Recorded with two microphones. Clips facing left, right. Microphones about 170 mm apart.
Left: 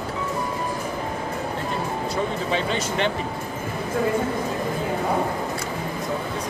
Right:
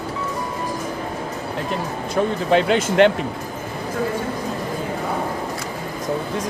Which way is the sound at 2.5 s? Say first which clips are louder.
Right 11 dB; 70° right (ahead or behind).